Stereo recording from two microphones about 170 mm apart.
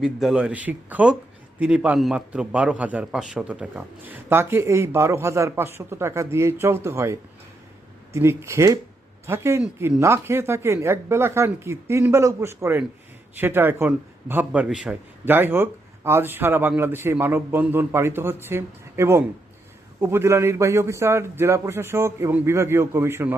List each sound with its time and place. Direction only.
0.0 s a man's voice: 5° right (ahead or behind)